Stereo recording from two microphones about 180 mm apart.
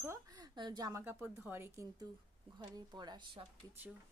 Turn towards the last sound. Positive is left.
turn(degrees=-25)  # may be behind; listen again after turning